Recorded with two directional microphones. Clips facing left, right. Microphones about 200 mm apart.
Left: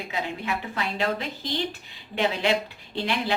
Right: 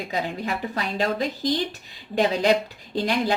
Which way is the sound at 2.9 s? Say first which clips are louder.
Right 4 dB; 40° right (ahead or behind).